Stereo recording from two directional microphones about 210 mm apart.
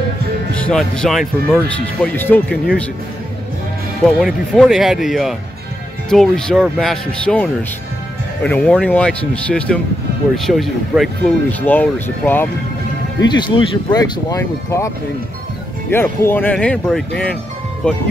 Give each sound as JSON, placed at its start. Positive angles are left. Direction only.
{"t": 0.6, "sound": "speech", "side_deg": 5}
{"t": 4.0, "sound": "speech", "side_deg": 0}
{"t": 13.2, "sound": "speech", "side_deg": 20}
{"t": 15.9, "sound": "speech", "side_deg": 10}